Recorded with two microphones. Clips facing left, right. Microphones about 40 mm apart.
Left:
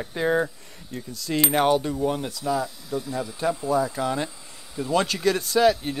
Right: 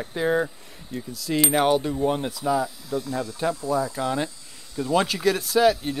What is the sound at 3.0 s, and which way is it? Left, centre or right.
Speech, centre.